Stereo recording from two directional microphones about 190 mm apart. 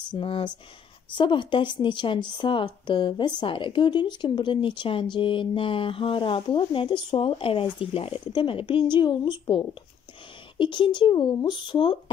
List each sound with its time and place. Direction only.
0.1 s a woman's voice: 25° left (ahead or behind)